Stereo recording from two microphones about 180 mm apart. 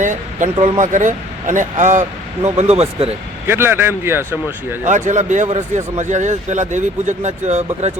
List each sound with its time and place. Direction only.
0.0 s a sound: 45° right (ahead or behind)
0.6 s speech: 45° right (ahead or behind)
3.4 s speech: 10° right (ahead or behind)
4.9 s speech: 45° right (ahead or behind)